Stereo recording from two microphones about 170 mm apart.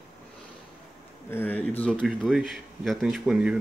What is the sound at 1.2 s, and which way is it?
Speech, 10° left (ahead or behind).